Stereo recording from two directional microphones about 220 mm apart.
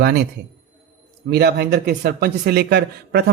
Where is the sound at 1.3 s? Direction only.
50° right (ahead or behind).